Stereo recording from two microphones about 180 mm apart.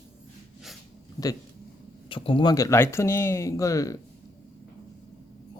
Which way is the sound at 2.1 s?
30° left (ahead or behind).